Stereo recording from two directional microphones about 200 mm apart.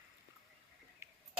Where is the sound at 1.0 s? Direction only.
15° right (ahead or behind).